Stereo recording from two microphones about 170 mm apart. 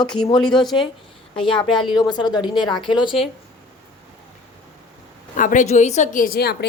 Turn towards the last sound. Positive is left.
turn(degrees=70)  # may be behind; listen again after turning